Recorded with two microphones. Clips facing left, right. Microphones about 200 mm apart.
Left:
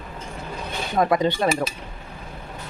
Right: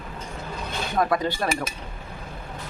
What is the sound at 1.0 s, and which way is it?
Speech, 20° left (ahead or behind).